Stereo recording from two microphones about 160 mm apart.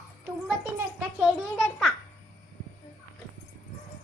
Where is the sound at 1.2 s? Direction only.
Centre (ahead or behind).